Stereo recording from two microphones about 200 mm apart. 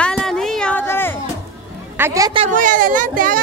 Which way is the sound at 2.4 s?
40° right (ahead or behind).